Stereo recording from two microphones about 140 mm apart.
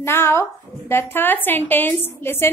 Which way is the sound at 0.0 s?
15° left (ahead or behind).